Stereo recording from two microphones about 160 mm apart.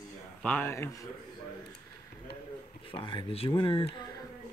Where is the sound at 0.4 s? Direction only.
10° left (ahead or behind).